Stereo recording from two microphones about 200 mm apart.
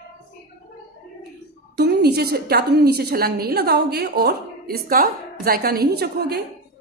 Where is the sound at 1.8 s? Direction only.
55° right (ahead or behind).